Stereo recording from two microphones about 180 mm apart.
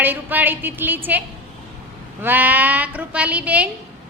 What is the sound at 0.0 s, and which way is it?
A woman's voice, 10° right (ahead or behind).